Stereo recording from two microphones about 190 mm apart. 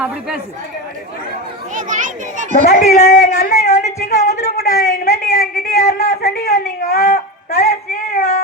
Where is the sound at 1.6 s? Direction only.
40° right (ahead or behind).